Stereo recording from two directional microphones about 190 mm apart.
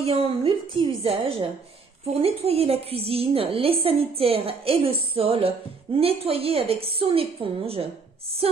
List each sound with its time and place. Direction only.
0.0 s a woman's voice: 30° right (ahead or behind)